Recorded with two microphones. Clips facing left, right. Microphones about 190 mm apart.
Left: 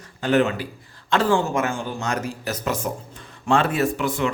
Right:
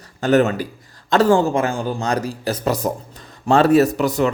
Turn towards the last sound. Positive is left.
turn(degrees=-40)  # may be behind; listen again after turning